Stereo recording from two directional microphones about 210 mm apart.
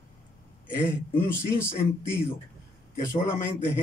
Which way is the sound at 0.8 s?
10° left (ahead or behind).